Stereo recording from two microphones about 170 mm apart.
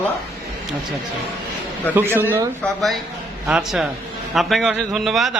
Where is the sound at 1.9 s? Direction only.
15° right (ahead or behind).